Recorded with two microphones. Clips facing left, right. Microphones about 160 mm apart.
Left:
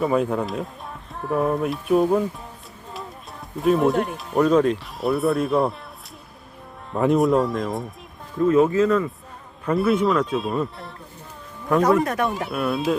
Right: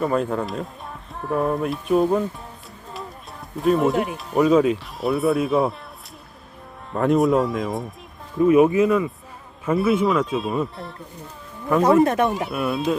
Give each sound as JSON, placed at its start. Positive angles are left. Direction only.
{"t": 0.0, "sound": "speech", "side_deg": 0}
{"t": 3.6, "sound": "speech", "side_deg": 0}
{"t": 6.9, "sound": "speech", "side_deg": 0}
{"t": 8.4, "sound": "speech", "side_deg": -15}
{"t": 12.0, "sound": "speech", "side_deg": -20}
{"t": 12.3, "sound": "speech", "side_deg": 0}